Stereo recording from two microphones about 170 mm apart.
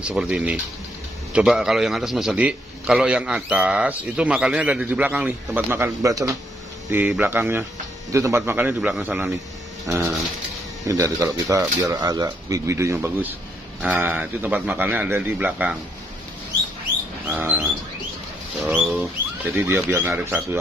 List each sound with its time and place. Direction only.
0.0 s a man's voice: 5° right (ahead or behind)
17.3 s a man's voice: 10° right (ahead or behind)
18.6 s bird: 5° right (ahead or behind)
19.4 s a man's voice: 10° right (ahead or behind)